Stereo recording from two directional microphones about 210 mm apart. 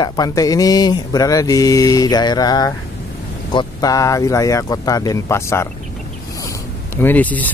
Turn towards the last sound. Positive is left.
turn(degrees=10)  # may be behind; listen again after turning